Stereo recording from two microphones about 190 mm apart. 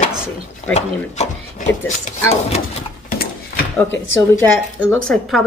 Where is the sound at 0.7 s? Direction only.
35° left (ahead or behind).